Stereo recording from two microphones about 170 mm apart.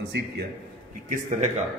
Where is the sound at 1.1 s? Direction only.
50° right (ahead or behind).